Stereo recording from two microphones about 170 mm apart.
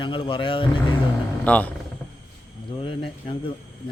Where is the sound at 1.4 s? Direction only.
10° left (ahead or behind).